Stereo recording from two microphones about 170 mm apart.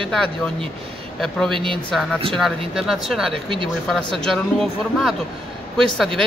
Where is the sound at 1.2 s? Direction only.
Centre (ahead or behind).